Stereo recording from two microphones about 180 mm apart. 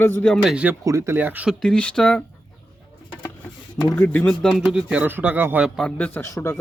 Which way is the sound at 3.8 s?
20° left (ahead or behind).